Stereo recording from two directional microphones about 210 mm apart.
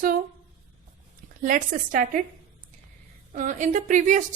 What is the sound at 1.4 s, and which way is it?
Speech, 40° right (ahead or behind).